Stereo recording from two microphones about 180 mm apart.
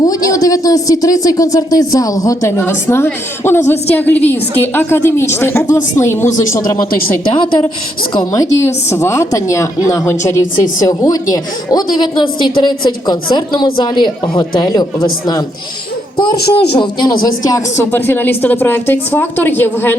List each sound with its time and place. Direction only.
0.0 s speech: 20° left (ahead or behind)
7.3 s a woman's voice: 25° left (ahead or behind)
16.1 s a woman's voice: 25° left (ahead or behind)